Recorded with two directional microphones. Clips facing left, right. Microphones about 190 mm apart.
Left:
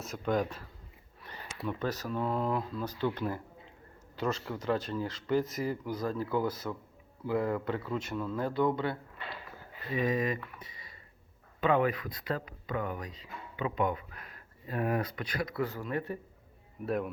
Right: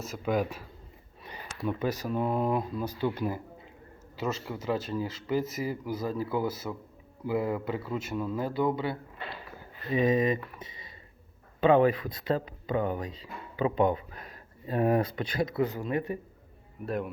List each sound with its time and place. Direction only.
0.0 s a man's voice: 5° right (ahead or behind)
1.2 s a sound: 15° right (ahead or behind)
1.6 s a man's voice: 10° right (ahead or behind)
9.9 s speech: 20° right (ahead or behind)
16.8 s speech: centre (ahead or behind)